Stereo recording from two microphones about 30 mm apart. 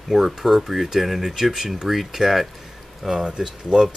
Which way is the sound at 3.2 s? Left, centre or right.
Right.